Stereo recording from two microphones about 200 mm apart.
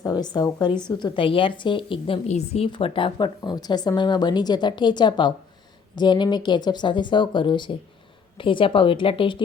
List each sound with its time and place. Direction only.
0.0 s a woman's voice: 20° left (ahead or behind)